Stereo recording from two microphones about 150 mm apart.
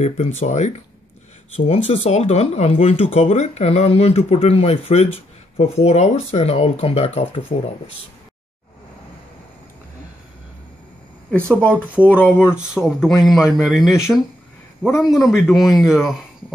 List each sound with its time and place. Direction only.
0.0 s speech: 45° left (ahead or behind)
11.9 s speech: 10° right (ahead or behind)
12.2 s a man's voice: 15° left (ahead or behind); by 16.3 s 5° right (ahead or behind)